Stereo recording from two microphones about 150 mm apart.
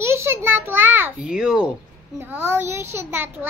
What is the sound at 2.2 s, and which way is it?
A child's voice, 15° right (ahead or behind).